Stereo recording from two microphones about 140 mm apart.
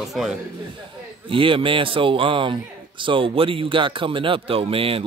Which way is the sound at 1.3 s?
40° right (ahead or behind).